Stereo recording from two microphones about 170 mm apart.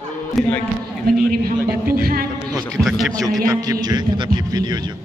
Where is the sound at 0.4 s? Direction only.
10° left (ahead or behind).